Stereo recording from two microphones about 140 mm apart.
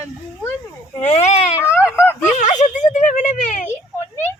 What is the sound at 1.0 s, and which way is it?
Speech, 55° left (ahead or behind).